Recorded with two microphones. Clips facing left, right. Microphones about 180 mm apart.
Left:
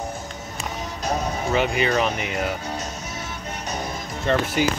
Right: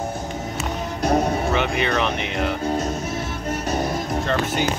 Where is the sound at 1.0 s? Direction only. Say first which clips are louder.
Right 6 dB; 55° right (ahead or behind).